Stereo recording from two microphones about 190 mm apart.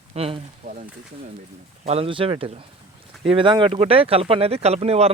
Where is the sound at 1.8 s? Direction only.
35° right (ahead or behind).